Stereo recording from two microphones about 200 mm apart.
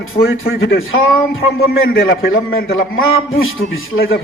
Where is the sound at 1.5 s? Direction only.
50° left (ahead or behind).